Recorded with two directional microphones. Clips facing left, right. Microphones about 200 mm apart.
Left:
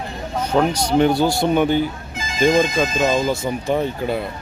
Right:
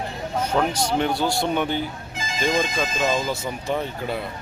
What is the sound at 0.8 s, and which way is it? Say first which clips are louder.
Speech: left 6 dB; centre (ahead or behind).